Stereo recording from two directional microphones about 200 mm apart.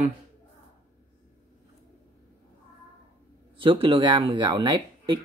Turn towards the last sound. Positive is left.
turn(degrees=-20)  # may be behind; listen again after turning